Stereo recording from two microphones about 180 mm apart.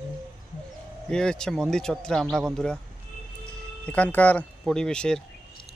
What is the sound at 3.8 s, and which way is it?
Speech, 10° left (ahead or behind).